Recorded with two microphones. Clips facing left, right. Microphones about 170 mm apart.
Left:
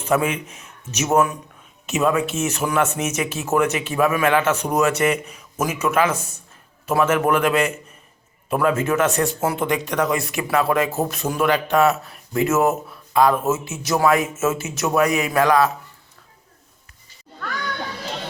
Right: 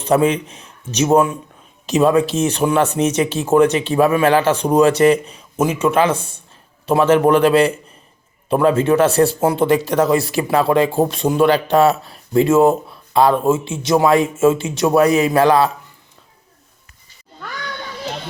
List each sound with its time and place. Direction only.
0.0 s a man's voice: 35° right (ahead or behind)